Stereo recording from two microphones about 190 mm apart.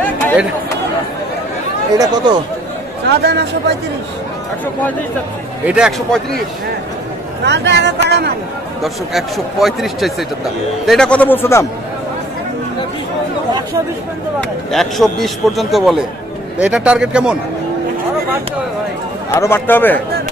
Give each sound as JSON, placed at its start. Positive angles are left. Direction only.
{"t": 2.0, "sound": "speech", "side_deg": -20}
{"t": 3.1, "sound": "speech", "side_deg": -60}
{"t": 5.7, "sound": "a man's voice", "side_deg": -5}
{"t": 7.4, "sound": "speech", "side_deg": -65}
{"t": 8.8, "sound": "a man's voice", "side_deg": 0}
{"t": 14.7, "sound": "a man's voice", "side_deg": 0}
{"t": 19.3, "sound": "a man's voice", "side_deg": 15}